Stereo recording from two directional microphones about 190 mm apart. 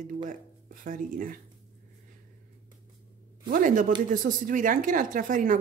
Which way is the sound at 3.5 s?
45° right (ahead or behind).